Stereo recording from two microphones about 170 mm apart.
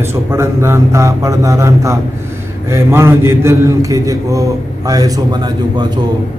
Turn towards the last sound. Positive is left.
turn(degrees=-25)  # may be behind; listen again after turning